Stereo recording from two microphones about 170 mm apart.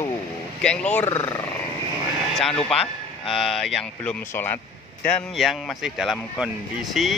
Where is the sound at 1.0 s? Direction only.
40° left (ahead or behind).